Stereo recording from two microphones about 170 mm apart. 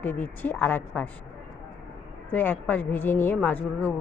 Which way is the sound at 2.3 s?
10° left (ahead or behind).